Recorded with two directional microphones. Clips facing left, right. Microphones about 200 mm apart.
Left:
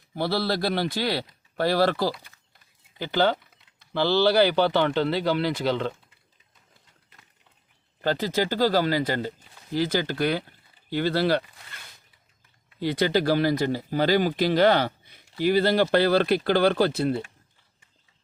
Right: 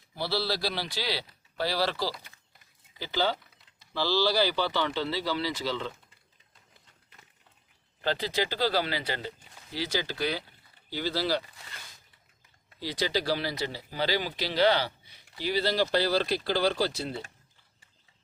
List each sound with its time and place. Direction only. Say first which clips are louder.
0.2 s speech: left 5 dB; 55° left (ahead or behind)
8.0 s speech: left 5 dB; 45° left (ahead or behind)
12.8 s speech: left 7 dB; 55° left (ahead or behind)